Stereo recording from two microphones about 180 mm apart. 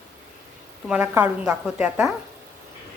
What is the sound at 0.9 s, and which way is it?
A woman's voice, 10° right (ahead or behind).